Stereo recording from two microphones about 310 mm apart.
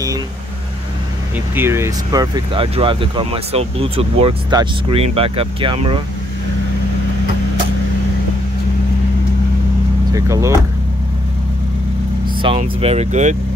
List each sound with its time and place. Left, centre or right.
1.5 s speech: centre
10.1 s speech: centre
12.4 s speech: centre